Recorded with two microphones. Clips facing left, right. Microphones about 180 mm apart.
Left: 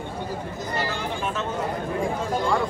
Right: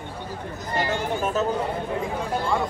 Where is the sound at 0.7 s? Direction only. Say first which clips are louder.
Right 4 dB; 50° right (ahead or behind).